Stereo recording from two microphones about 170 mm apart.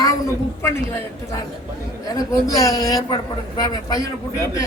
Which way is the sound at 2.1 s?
20° left (ahead or behind).